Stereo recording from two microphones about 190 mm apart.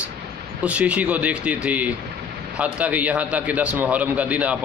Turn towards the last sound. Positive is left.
turn(degrees=-5)  # may be behind; listen again after turning